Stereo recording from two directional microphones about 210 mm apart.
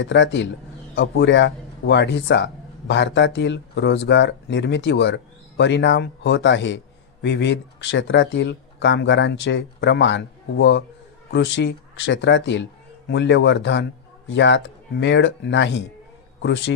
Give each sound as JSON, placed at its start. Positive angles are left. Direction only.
{"t": 0.0, "sound": "a man's voice", "side_deg": 60}